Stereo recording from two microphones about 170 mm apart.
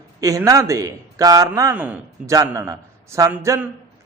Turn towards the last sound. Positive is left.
turn(degrees=-15)  # may be behind; listen again after turning